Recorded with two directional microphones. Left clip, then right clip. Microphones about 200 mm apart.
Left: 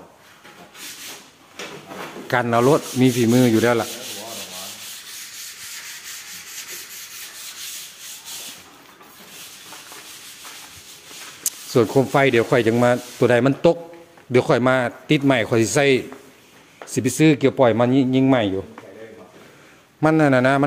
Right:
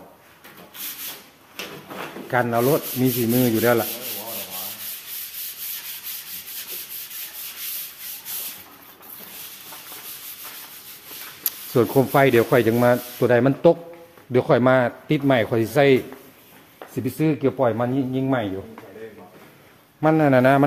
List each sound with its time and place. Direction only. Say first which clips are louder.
2.2 s sanding: left 3 dB; 25° left (ahead or behind)
11.4 s speech: left 2 dB; 5° left (ahead or behind)
16.9 s speech: left 6 dB; 30° left (ahead or behind)
20.0 s sanding: left 1 dB; 20° left (ahead or behind)